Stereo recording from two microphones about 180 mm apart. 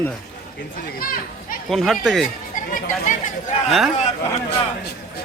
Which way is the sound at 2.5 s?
45° left (ahead or behind).